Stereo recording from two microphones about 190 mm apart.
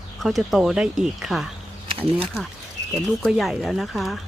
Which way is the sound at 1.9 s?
30° right (ahead or behind).